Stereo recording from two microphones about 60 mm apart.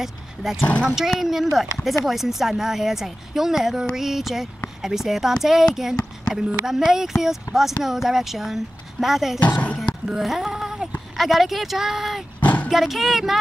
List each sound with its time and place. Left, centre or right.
0.0 s a woman's voice: centre
9.4 s speech: left
10.0 s a sound: centre
11.1 s a woman's voice: centre
12.4 s a sound: left
12.7 s a woman's voice: centre